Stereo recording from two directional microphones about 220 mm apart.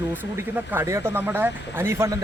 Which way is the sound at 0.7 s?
10° right (ahead or behind).